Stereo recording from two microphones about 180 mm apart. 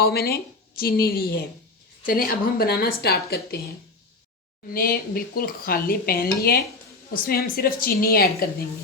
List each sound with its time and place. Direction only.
0.0 s speech: 60° left (ahead or behind)
4.7 s speech: 55° left (ahead or behind)